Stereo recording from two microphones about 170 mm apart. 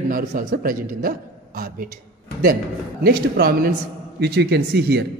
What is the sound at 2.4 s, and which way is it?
A man's voice, 60° right (ahead or behind).